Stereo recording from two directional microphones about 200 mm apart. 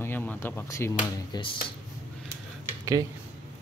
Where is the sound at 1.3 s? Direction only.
25° left (ahead or behind).